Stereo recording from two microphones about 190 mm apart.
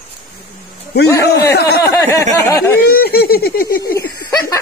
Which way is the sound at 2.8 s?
55° left (ahead or behind).